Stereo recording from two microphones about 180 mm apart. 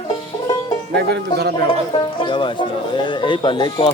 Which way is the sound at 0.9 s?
65° right (ahead or behind).